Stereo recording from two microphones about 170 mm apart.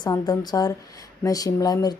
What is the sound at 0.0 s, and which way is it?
Speech, 25° left (ahead or behind).